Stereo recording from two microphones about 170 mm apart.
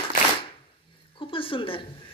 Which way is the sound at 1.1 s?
30° left (ahead or behind).